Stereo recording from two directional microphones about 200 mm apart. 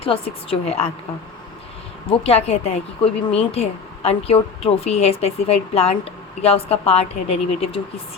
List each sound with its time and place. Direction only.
0.0 s a woman's voice: 30° left (ahead or behind)
2.0 s a woman's voice: 30° left (ahead or behind)